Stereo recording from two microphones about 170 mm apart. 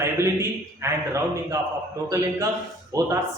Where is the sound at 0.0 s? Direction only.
15° right (ahead or behind).